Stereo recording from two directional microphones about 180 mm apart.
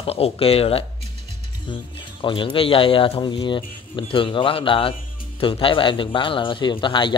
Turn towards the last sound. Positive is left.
turn(degrees=25)  # may be behind; listen again after turning